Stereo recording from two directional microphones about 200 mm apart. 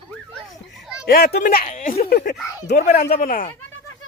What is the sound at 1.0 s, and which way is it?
Speech, 50° left (ahead or behind).